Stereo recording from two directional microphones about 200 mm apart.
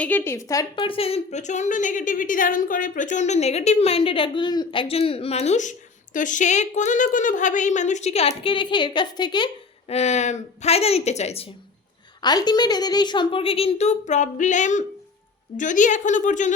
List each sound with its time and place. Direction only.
0.0 s a woman's voice: 10° left (ahead or behind)
9.9 s a woman's voice: 35° left (ahead or behind)